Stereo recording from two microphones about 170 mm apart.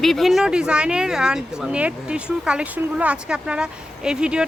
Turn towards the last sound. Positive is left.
turn(degrees=-5)  # may be behind; listen again after turning